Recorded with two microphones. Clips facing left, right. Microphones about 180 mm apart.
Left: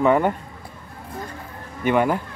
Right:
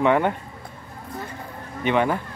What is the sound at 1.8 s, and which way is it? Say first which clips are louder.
Speech: left 2 dB; 5° left (ahead or behind).